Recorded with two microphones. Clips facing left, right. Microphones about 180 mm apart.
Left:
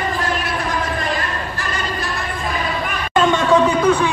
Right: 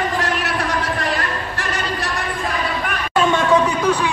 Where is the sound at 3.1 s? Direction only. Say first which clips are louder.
Left 1 dB; 10° right (ahead or behind).